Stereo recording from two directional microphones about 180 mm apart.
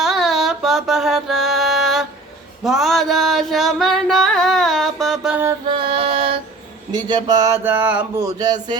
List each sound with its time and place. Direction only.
0.0 s music: centre (ahead or behind)
5.7 s music: 30° right (ahead or behind)
6.9 s speech: 25° right (ahead or behind)